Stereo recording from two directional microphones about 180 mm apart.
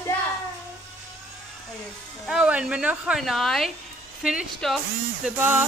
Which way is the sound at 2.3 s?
5° right (ahead or behind).